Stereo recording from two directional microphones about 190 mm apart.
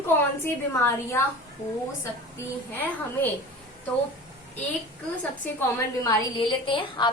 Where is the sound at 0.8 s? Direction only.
10° left (ahead or behind).